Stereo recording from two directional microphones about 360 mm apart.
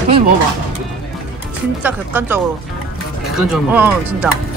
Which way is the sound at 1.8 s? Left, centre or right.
Centre.